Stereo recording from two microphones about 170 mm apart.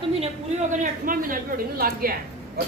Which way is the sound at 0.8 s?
55° right (ahead or behind).